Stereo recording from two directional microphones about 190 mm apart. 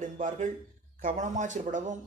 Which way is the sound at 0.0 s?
40° right (ahead or behind).